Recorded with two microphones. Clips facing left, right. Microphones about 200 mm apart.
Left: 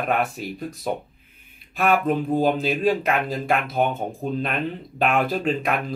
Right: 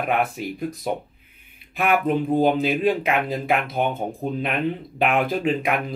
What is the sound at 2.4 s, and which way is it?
Speech, 15° right (ahead or behind).